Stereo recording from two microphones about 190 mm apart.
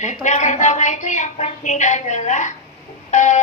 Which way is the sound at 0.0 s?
40° left (ahead or behind).